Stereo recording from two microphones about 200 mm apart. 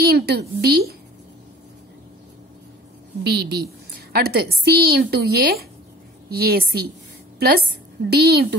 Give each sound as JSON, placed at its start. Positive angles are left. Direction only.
{"t": 0.0, "sound": "a woman's voice", "side_deg": -55}
{"t": 3.3, "sound": "a woman's voice", "side_deg": -55}